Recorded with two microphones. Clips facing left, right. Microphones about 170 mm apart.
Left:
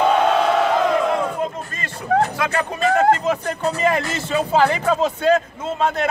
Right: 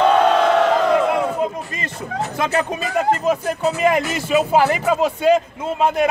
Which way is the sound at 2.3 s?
20° right (ahead or behind).